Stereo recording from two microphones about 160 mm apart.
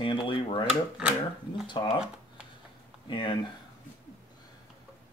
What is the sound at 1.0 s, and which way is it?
Speech, 5° right (ahead or behind).